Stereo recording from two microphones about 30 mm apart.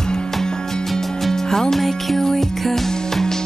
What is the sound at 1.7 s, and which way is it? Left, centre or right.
Music, centre.